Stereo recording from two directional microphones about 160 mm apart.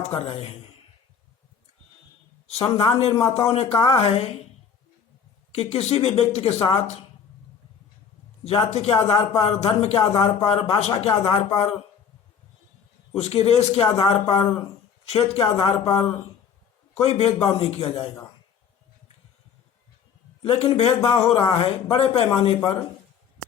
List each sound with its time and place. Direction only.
0.0 s speech: 40° left (ahead or behind)
2.5 s speech: 40° left (ahead or behind)
3.1 s a man's voice: 20° left (ahead or behind)
3.3 s speech: 40° left (ahead or behind)
5.5 s speech: 40° left (ahead or behind)
8.4 s speech: 40° left (ahead or behind)
13.1 s speech: 40° left (ahead or behind)
20.4 s speech: 40° left (ahead or behind)